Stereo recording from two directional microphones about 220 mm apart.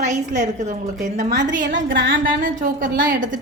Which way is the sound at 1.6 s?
55° right (ahead or behind).